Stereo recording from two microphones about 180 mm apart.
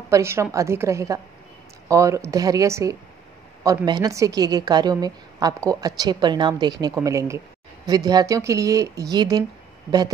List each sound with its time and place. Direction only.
0.1 s a woman's voice: 15° right (ahead or behind)